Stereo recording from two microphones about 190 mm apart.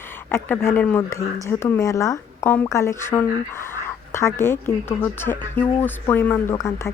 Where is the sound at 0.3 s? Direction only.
10° left (ahead or behind).